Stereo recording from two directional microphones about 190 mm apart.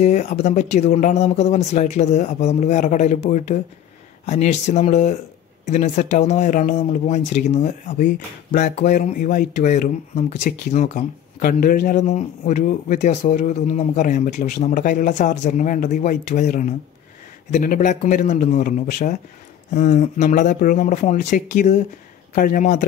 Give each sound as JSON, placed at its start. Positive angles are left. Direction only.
{"t": 0.0, "sound": "a man's voice", "side_deg": 40}